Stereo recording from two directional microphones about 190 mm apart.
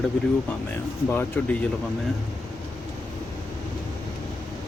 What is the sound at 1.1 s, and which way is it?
Speech, 10° left (ahead or behind).